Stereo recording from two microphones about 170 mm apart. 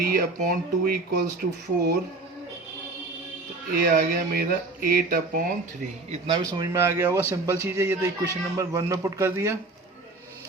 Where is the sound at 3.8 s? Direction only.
60° right (ahead or behind).